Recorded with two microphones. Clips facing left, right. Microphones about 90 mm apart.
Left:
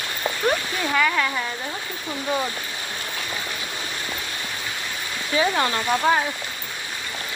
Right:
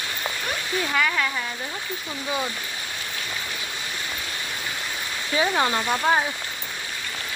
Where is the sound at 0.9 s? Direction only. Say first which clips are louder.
Left 3 dB; centre (ahead or behind).